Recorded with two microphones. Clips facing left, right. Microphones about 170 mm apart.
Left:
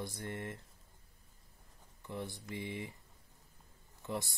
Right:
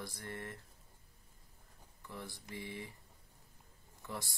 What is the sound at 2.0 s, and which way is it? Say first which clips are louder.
Speech: left 5 dB; 20° left (ahead or behind).